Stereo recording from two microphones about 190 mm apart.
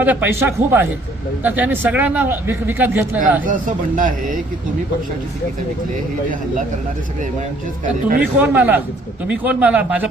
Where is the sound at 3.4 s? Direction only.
45° right (ahead or behind).